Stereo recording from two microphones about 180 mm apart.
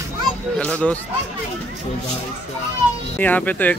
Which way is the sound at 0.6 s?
5° left (ahead or behind).